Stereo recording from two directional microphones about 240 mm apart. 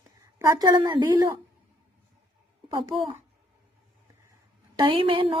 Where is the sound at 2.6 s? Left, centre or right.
Centre.